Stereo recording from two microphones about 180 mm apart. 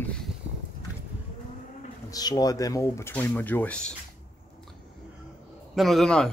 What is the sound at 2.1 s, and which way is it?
Speech, 20° left (ahead or behind).